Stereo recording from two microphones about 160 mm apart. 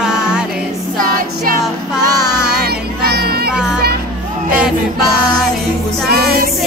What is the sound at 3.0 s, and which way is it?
Music, 80° right.